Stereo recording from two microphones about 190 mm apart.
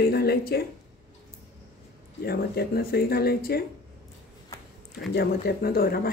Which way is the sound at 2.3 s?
55° left (ahead or behind).